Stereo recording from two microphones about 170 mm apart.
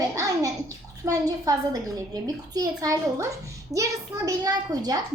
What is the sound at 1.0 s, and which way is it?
A child's voice, 20° right (ahead or behind).